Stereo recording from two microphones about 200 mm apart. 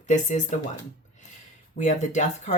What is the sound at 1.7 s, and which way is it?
Speech, 40° left (ahead or behind).